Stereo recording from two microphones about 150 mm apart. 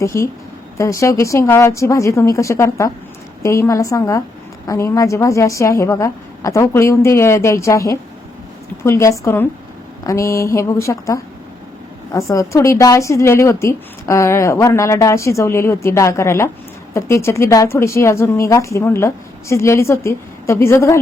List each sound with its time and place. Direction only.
0.0 s a woman's voice: 20° left (ahead or behind)